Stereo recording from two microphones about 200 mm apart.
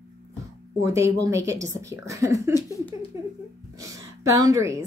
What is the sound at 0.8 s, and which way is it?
Speech, 15° right (ahead or behind).